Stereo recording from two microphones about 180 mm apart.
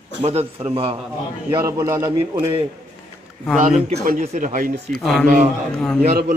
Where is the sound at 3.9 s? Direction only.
50° right (ahead or behind).